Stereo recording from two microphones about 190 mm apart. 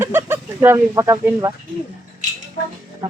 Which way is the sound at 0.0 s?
10° right (ahead or behind).